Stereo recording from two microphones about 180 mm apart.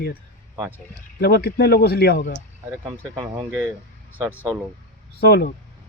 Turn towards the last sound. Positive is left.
turn(degrees=60)  # may be behind; listen again after turning